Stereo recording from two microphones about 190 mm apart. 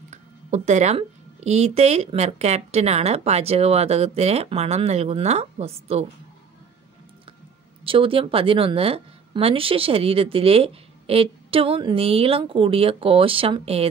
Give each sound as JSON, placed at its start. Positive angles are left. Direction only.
{"t": 0.1, "sound": "a woman's voice", "side_deg": -35}
{"t": 7.8, "sound": "a woman's voice", "side_deg": -30}